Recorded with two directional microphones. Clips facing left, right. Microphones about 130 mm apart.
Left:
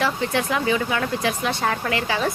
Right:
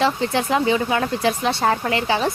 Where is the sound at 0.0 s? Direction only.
30° right (ahead or behind).